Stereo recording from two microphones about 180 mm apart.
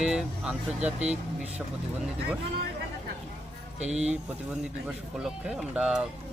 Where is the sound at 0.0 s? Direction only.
5° right (ahead or behind).